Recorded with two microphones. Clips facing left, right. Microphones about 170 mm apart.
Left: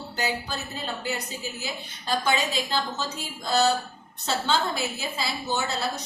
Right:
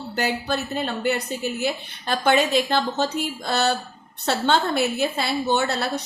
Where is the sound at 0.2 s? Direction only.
65° right (ahead or behind).